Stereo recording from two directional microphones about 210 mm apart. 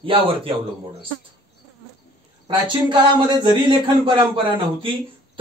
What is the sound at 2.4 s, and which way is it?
Speech, 25° right (ahead or behind).